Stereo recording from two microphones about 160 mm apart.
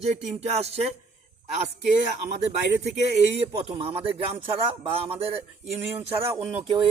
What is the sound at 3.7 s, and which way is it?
Speech, 35° right (ahead or behind).